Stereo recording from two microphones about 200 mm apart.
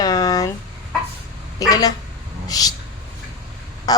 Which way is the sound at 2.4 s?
20° left (ahead or behind).